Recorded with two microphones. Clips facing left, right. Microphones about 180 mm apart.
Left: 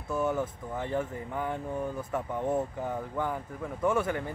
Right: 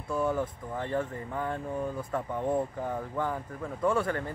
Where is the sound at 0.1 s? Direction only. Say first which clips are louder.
Even; 5° left (ahead or behind).